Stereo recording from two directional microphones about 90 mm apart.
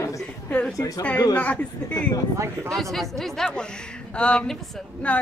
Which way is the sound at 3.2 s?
5° left (ahead or behind).